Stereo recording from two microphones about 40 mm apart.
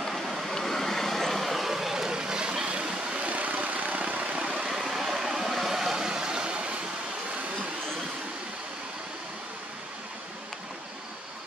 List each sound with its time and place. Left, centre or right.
0.0 s vehicle: centre; by 3.3 s right
3.3 s vehicle: right
4.6 s vehicle: centre; by 6.8 s right